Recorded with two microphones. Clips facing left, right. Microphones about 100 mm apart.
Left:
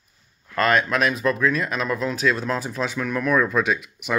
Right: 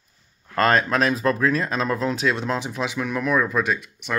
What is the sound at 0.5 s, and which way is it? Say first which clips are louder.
Speech: right 1 dB; 35° right (ahead or behind).